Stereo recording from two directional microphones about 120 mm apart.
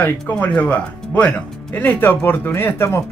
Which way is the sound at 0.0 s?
15° left (ahead or behind).